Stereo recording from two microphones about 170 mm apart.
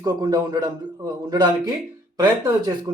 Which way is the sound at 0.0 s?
20° right (ahead or behind).